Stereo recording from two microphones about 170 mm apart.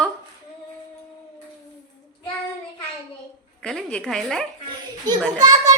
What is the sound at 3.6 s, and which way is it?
Speech, 5° left (ahead or behind).